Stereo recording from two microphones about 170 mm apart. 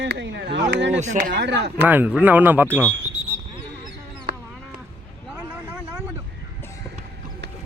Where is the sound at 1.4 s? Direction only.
90° right.